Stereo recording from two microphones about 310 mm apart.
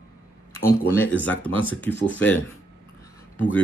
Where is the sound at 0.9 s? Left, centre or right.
Centre.